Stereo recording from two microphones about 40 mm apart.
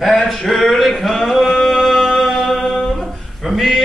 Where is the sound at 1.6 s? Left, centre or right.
Centre.